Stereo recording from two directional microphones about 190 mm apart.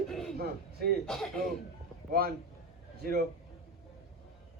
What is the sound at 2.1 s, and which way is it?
A man's voice, 50° right (ahead or behind).